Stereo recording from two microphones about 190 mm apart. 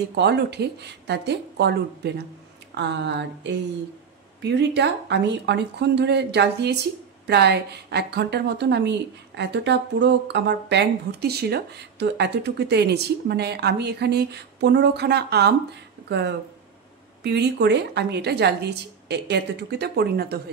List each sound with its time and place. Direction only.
0.1 s a woman's voice: 60° right (ahead or behind)